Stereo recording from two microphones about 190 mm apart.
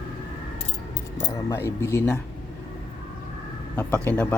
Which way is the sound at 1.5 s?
15° left (ahead or behind).